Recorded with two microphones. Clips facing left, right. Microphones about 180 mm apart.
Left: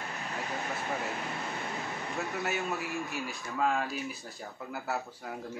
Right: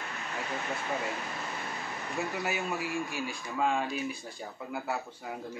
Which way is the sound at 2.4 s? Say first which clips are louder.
Even; centre (ahead or behind).